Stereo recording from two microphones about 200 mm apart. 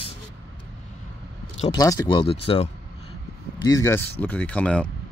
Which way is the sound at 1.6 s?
20° left (ahead or behind).